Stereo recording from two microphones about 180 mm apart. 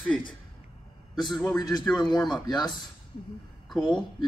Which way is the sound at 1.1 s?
25° left (ahead or behind).